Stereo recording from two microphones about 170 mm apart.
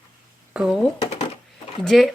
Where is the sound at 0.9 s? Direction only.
40° left (ahead or behind).